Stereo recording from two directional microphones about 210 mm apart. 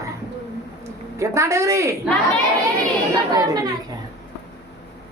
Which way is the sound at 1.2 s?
15° right (ahead or behind).